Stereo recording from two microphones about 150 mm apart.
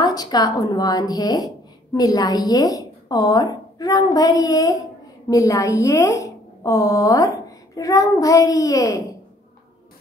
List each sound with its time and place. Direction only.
0.0 s a woman's voice: 25° left (ahead or behind)